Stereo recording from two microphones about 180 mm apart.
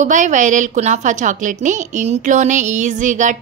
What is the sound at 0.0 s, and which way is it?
A woman's voice, 45° right (ahead or behind).